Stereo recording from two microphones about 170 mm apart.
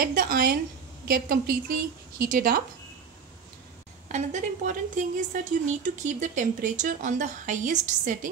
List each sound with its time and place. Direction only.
0.0 s a woman's voice: 55° right (ahead or behind)
4.1 s a woman's voice: 45° right (ahead or behind)